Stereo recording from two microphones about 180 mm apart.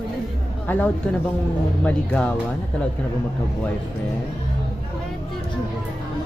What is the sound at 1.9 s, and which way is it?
Speech, 5° left (ahead or behind).